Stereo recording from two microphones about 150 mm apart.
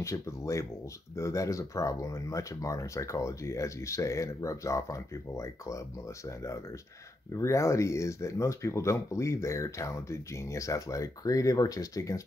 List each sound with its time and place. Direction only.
0.0 s speech: 20° left (ahead or behind)